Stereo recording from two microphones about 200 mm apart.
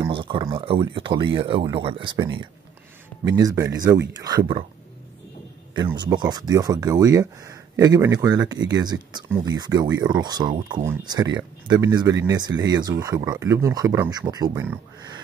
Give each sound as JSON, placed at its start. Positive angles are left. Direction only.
{"t": 0.0, "sound": "speech", "side_deg": -25}
{"t": 5.9, "sound": "speech", "side_deg": -20}